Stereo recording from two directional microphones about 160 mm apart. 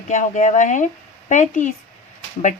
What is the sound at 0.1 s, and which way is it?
Speech, 50° left (ahead or behind).